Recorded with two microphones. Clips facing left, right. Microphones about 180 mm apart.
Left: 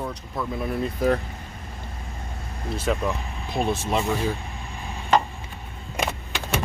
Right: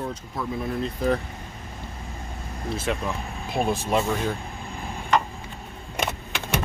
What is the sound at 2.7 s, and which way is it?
Speech, centre (ahead or behind).